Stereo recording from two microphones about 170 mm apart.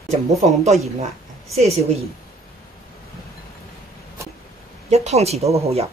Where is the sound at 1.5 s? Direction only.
40° right (ahead or behind).